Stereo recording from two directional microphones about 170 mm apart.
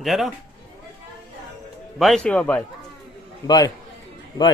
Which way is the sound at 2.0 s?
5° left (ahead or behind).